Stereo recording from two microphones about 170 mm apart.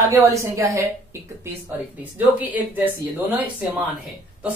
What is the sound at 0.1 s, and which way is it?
Speech, 15° right (ahead or behind).